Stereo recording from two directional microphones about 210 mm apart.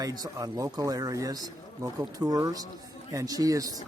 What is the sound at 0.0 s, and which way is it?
Speech, 15° right (ahead or behind).